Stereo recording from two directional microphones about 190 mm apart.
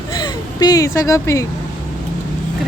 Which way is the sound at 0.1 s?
20° left (ahead or behind).